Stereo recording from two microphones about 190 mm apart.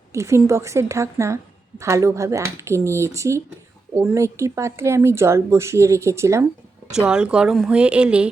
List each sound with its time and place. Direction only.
0.1 s a woman's voice: 15° right (ahead or behind)